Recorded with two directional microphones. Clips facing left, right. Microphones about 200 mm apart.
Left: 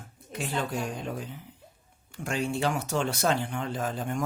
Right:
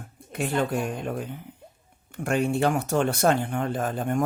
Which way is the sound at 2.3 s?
55° right (ahead or behind).